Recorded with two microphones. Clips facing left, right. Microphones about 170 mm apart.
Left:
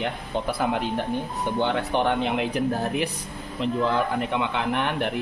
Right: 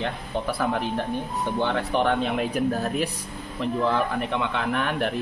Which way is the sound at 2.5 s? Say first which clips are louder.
Even; 20° left (ahead or behind).